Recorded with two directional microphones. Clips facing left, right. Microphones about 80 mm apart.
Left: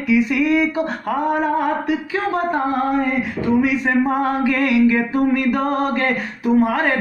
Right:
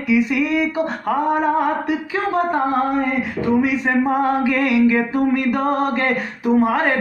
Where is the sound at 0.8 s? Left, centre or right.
Right.